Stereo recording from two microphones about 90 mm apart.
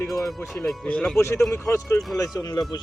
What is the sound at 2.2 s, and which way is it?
Speech, 45° left (ahead or behind).